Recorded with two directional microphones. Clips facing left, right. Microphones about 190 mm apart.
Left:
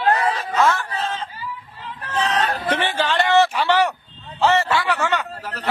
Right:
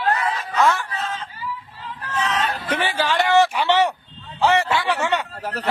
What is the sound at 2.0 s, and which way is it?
Hubbub, 35° left (ahead or behind).